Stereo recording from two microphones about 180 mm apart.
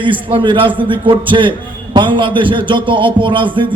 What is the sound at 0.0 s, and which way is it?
A man's voice, 30° right (ahead or behind).